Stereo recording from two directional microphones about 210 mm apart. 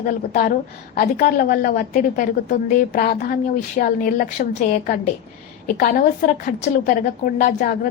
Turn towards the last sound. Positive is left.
turn(degrees=40)  # may be behind; listen again after turning